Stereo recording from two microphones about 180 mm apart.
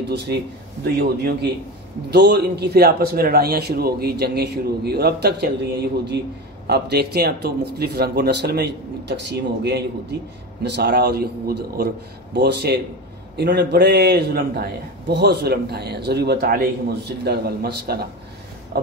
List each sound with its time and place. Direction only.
0.8 s a man's voice: 65° right (ahead or behind)